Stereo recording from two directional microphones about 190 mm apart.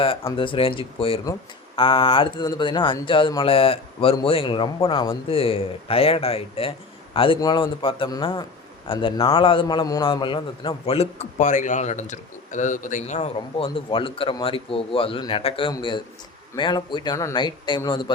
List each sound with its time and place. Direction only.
0.3 s speech: 30° left (ahead or behind)